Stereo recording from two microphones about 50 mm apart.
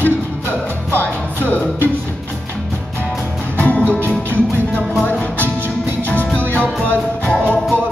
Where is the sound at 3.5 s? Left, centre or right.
Left.